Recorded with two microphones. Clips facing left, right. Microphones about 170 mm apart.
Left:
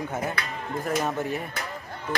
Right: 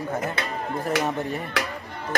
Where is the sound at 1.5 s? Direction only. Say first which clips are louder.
Right 7 dB; 80° right.